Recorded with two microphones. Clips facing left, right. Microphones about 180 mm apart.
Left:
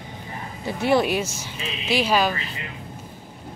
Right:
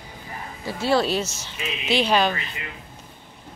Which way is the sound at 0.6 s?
15° left (ahead or behind).